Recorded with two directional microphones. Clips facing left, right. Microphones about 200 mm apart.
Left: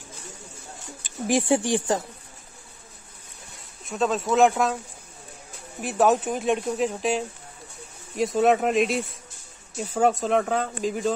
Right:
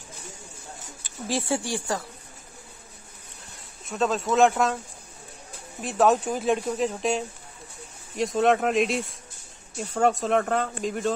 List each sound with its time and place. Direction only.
1.2 s speech: 15° left (ahead or behind)
3.8 s speech: centre (ahead or behind)
5.8 s speech: centre (ahead or behind)